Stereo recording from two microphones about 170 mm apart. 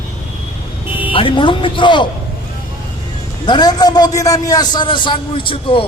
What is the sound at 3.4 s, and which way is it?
A man's voice, 25° left (ahead or behind).